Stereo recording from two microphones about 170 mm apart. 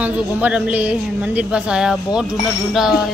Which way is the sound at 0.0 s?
10° right (ahead or behind).